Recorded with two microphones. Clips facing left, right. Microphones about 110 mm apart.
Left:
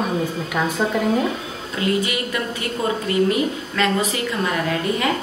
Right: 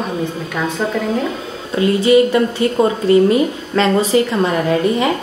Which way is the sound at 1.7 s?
30° right (ahead or behind).